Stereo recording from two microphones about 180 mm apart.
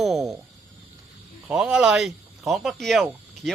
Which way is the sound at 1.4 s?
5° right (ahead or behind).